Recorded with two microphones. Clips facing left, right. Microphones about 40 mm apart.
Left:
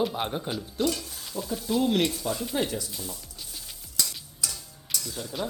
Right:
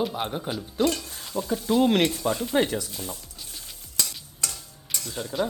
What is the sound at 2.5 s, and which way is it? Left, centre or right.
Speech, right.